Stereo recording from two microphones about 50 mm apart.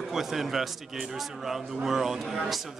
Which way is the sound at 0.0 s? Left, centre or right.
Centre.